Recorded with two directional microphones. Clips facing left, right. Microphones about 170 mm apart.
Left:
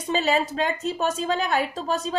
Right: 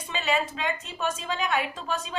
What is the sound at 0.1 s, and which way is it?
Speech, 35° left (ahead or behind).